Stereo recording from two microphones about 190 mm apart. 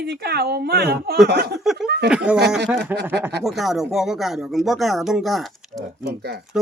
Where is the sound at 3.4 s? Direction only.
Centre (ahead or behind).